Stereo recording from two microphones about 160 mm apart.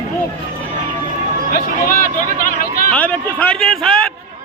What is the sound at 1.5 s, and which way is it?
Speech, 60° left (ahead or behind).